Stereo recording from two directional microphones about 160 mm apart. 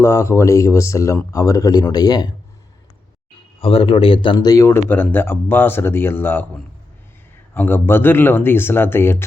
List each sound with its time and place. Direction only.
0.0 s speech: 15° left (ahead or behind)
3.6 s speech: 35° left (ahead or behind); by 6.4 s 15° left (ahead or behind)
7.5 s speech: 10° left (ahead or behind)